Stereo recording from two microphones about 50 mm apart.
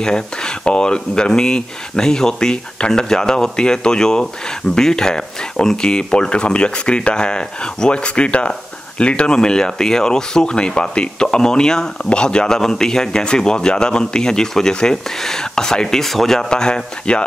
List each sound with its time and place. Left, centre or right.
0.0 s speech: centre
16.4 s speech: centre